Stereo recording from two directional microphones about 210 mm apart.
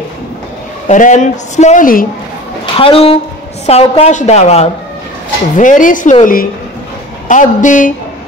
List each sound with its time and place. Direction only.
0.8 s speech: 35° left (ahead or behind)
2.6 s a woman's voice: 25° left (ahead or behind)